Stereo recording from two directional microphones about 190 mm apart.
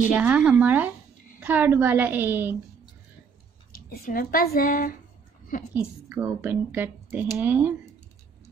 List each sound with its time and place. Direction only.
0.1 s speech: 5° right (ahead or behind)
3.7 s speech: 50° left (ahead or behind)
5.8 s speech: 10° right (ahead or behind)